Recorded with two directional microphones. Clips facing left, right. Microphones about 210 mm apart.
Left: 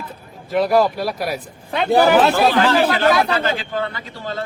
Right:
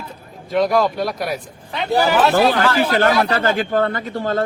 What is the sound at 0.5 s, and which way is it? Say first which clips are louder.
Speech: left 1 dB; 5° left (ahead or behind).